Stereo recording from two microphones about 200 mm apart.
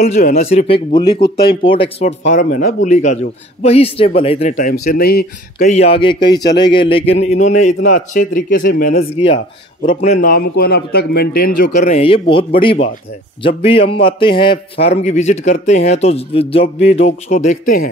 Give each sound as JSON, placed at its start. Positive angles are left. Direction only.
{"t": 0.0, "sound": "a man's voice", "side_deg": 35}
{"t": 1.0, "sound": "speech", "side_deg": 55}
{"t": 1.6, "sound": "a man's voice", "side_deg": 25}
{"t": 2.2, "sound": "a man's voice", "side_deg": 40}
{"t": 5.7, "sound": "a man's voice", "side_deg": 30}
{"t": 9.1, "sound": "a man's voice", "side_deg": 30}
{"t": 10.3, "sound": "a man's voice", "side_deg": 50}